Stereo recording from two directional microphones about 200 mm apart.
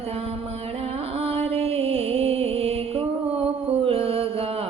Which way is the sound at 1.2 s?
30° right (ahead or behind).